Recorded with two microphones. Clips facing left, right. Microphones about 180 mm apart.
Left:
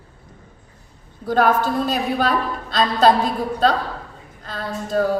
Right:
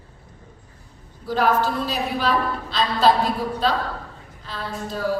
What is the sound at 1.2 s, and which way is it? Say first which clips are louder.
A woman's voice: left 3 dB; 50° left (ahead or behind).